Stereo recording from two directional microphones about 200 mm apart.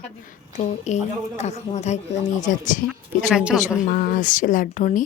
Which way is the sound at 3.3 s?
5° right (ahead or behind).